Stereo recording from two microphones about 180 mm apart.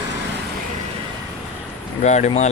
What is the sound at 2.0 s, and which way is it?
Speech, 40° left (ahead or behind).